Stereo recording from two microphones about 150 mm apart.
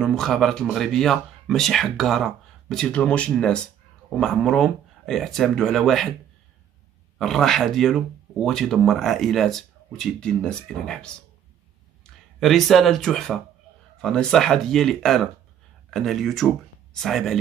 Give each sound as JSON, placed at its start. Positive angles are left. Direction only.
{"t": 0.0, "sound": "speech", "side_deg": 5}
{"t": 7.2, "sound": "speech", "side_deg": 0}